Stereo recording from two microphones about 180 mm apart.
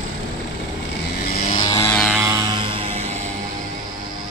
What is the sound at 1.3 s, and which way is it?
Vehicle, 35° left (ahead or behind).